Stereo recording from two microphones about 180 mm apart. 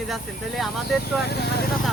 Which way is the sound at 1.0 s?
65° left (ahead or behind).